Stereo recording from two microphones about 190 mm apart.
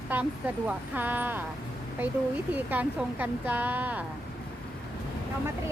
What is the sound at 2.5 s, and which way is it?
Speech, 10° right (ahead or behind).